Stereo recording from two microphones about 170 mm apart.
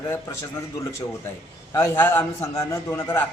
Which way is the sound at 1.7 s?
15° left (ahead or behind).